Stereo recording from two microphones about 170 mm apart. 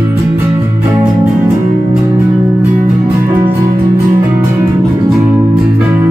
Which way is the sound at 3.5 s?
20° right (ahead or behind).